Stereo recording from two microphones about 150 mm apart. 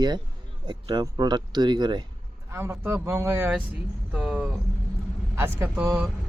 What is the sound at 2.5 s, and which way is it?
Speech, 15° right (ahead or behind).